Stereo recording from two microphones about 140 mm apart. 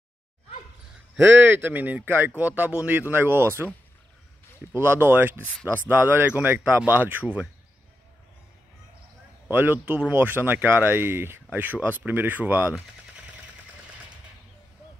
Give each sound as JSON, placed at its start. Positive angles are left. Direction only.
{"t": 1.1, "sound": "speech", "side_deg": -10}
{"t": 4.7, "sound": "speech", "side_deg": -15}
{"t": 9.5, "sound": "speech", "side_deg": -15}